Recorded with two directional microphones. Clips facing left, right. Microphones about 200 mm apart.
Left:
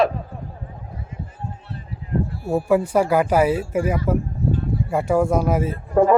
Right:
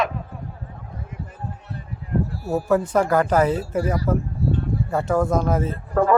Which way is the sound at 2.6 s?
10° left (ahead or behind).